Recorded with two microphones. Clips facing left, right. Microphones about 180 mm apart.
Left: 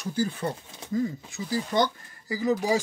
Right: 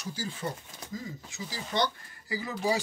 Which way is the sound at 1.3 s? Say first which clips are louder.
Left 6 dB; 50° left (ahead or behind).